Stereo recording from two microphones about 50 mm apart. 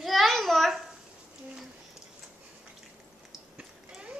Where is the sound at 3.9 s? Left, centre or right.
Right.